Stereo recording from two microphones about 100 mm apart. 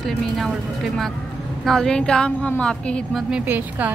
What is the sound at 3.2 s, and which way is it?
Speech, 15° right (ahead or behind).